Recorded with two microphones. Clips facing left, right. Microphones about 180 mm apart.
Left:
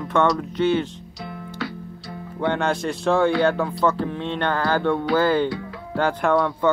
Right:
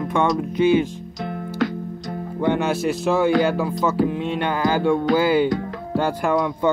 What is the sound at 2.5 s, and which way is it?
Music, 5° right (ahead or behind).